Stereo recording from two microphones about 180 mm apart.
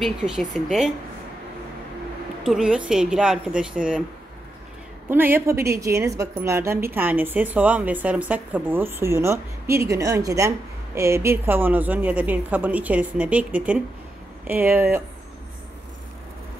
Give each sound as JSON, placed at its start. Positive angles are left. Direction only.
{"t": 0.0, "sound": "a woman's voice", "side_deg": 0}
{"t": 2.4, "sound": "a woman's voice", "side_deg": -5}
{"t": 5.1, "sound": "a woman's voice", "side_deg": -10}